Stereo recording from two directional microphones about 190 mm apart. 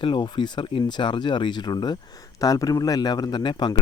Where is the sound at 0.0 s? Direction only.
25° left (ahead or behind).